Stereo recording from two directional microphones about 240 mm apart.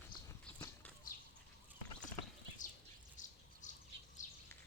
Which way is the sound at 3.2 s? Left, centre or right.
Left.